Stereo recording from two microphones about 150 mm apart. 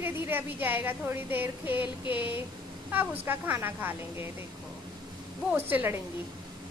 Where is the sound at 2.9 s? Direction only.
10° right (ahead or behind).